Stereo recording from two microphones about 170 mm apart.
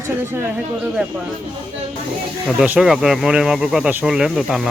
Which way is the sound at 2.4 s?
5° right (ahead or behind).